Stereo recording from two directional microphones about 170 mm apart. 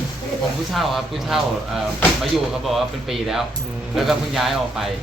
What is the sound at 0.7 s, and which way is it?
A man's voice, centre (ahead or behind).